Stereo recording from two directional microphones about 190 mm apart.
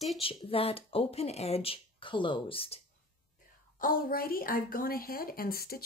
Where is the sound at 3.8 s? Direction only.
50° left (ahead or behind).